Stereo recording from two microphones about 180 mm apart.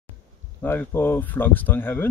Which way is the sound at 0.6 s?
10° left (ahead or behind).